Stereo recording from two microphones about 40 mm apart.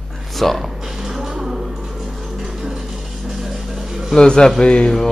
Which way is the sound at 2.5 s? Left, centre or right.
Centre.